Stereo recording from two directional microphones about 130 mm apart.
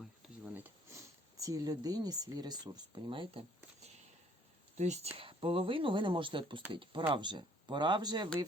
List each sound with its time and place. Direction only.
0.5 s speech: 20° right (ahead or behind); by 3.4 s 40° right (ahead or behind)
4.8 s speech: 60° right (ahead or behind); by 8.3 s 35° right (ahead or behind)